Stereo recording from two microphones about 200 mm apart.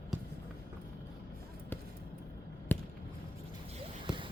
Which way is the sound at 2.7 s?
10° left (ahead or behind).